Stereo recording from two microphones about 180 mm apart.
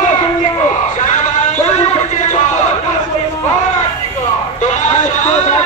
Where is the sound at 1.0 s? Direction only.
45° left (ahead or behind).